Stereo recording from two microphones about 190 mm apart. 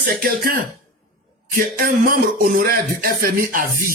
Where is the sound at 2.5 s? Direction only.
50° right (ahead or behind).